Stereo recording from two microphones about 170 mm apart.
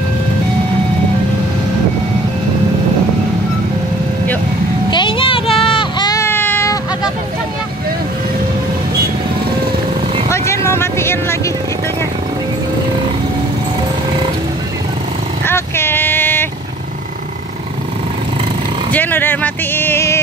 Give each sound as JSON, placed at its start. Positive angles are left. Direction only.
{"t": 4.9, "sound": "a sound", "side_deg": 30}
{"t": 10.3, "sound": "vehicle", "side_deg": 15}
{"t": 15.4, "sound": "vehicle", "side_deg": 15}
{"t": 18.9, "sound": "vehicle", "side_deg": 10}